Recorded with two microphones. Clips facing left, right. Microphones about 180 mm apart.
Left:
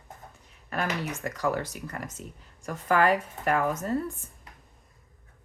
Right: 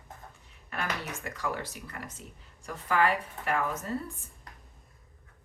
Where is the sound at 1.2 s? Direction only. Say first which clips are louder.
Left 7 dB; 40° left (ahead or behind).